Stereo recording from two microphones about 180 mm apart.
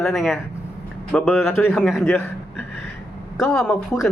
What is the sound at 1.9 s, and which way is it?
Speech, centre (ahead or behind).